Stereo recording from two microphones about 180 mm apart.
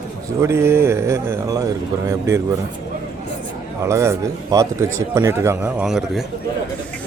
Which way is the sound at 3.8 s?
15° right (ahead or behind).